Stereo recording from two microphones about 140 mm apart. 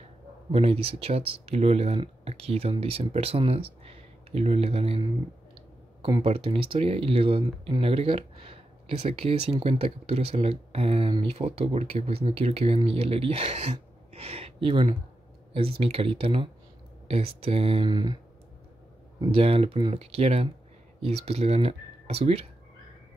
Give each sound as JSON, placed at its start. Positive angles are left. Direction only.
{"t": 0.5, "sound": "speech", "side_deg": -45}
{"t": 19.3, "sound": "speech", "side_deg": -40}